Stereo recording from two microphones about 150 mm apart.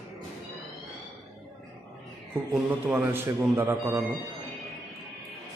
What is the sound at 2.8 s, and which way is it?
Speech, 15° right (ahead or behind).